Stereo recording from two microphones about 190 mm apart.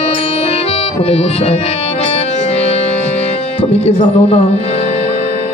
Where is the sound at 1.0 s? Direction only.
30° left (ahead or behind).